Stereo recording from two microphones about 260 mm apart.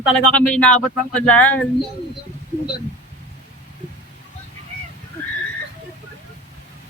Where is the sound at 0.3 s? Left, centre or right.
Centre.